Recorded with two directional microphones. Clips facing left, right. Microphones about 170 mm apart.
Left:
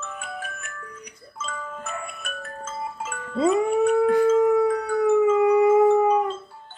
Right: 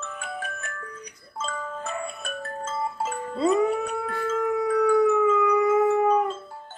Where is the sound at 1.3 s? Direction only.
30° right (ahead or behind).